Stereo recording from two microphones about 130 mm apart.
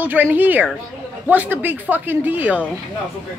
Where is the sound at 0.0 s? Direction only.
15° right (ahead or behind).